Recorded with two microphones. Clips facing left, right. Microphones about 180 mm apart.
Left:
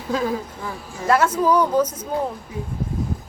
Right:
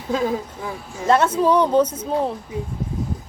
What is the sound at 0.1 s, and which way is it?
A woman's voice, 20° right (ahead or behind).